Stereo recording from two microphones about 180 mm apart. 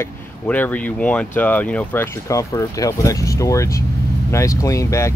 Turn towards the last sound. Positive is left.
turn(degrees=15)  # may be behind; listen again after turning